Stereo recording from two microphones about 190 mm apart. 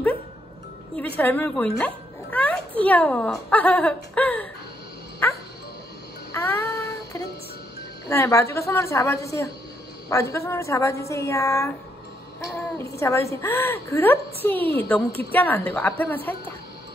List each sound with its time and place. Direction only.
0.9 s a woman's voice: 5° left (ahead or behind)
6.3 s child singing: 15° left (ahead or behind)
8.1 s a woman's voice: 15° left (ahead or behind)
12.7 s a woman's voice: 15° left (ahead or behind)